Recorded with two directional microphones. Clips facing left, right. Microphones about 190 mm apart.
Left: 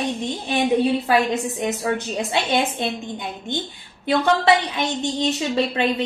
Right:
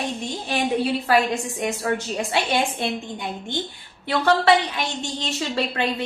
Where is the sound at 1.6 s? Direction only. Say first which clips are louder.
Right 1 dB; 20° left (ahead or behind).